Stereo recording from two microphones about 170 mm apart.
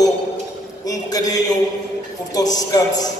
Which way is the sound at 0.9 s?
20° left (ahead or behind).